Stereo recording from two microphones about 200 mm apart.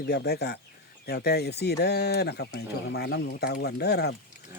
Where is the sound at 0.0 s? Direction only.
55° left (ahead or behind).